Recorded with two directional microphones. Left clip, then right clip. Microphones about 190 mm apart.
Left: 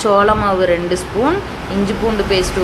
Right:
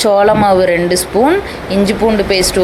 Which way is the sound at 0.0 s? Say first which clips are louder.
Right 3 dB; 25° right (ahead or behind).